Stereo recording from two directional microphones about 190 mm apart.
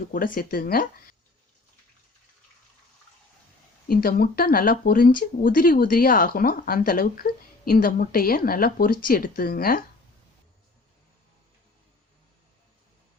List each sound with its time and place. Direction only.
0.1 s speech: 45° left (ahead or behind)
3.8 s speech: 50° left (ahead or behind)